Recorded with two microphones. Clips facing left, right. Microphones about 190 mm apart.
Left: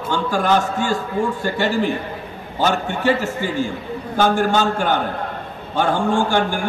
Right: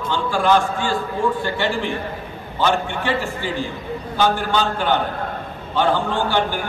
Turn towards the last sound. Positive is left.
turn(degrees=45)  # may be behind; listen again after turning